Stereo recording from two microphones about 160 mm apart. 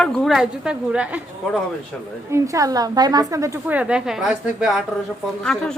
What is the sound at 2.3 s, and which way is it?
A woman's voice, 20° right (ahead or behind).